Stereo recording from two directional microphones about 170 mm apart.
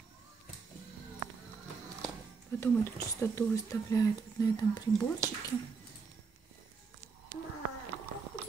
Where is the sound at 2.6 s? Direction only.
15° left (ahead or behind).